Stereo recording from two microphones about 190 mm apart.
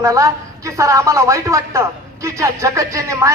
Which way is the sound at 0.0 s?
15° right (ahead or behind).